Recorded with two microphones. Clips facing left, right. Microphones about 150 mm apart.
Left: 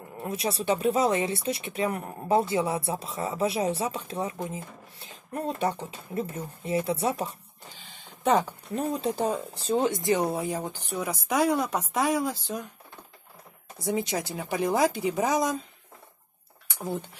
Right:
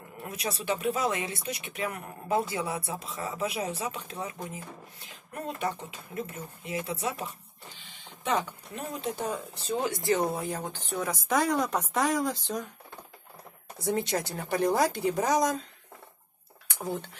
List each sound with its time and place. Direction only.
0.2 s speech: 30° left (ahead or behind)
10.0 s speech: 10° left (ahead or behind)
13.8 s speech: centre (ahead or behind)